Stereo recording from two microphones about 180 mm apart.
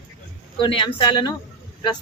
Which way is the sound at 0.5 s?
25° left (ahead or behind).